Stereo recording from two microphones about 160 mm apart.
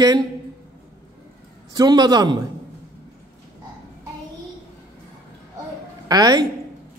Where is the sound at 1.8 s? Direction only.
25° right (ahead or behind).